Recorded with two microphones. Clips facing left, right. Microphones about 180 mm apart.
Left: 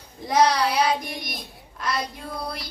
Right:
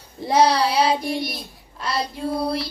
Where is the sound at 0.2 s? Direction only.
30° right (ahead or behind).